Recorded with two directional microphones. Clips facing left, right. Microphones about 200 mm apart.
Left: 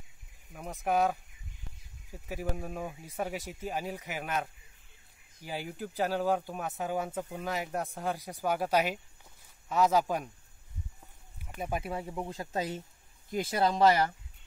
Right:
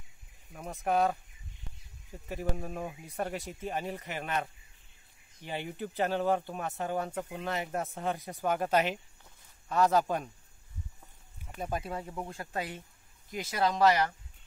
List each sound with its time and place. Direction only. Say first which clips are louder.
0.5 s speech: even; centre (ahead or behind)
2.2 s speech: even; 5° left (ahead or behind)
11.3 s speech: even; 5° left (ahead or behind); by 14.1 s 30° left (ahead or behind)